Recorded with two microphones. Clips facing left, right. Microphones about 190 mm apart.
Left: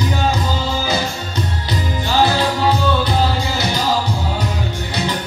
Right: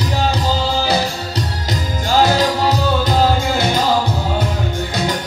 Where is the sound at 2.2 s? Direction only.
45° right (ahead or behind).